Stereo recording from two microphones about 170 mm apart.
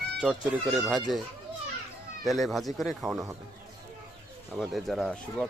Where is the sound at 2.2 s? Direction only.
Centre (ahead or behind).